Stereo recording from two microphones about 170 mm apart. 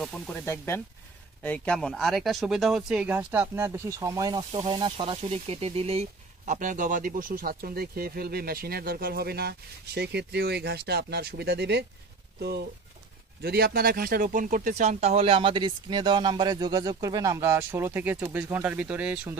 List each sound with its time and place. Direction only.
0.0 s speech: centre (ahead or behind)
0.5 s speech: 15° left (ahead or behind); by 19.3 s 5° right (ahead or behind)